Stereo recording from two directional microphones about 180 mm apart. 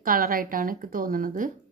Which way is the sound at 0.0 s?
50° right (ahead or behind).